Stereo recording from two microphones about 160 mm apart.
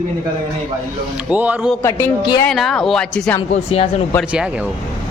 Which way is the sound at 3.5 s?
40° left (ahead or behind).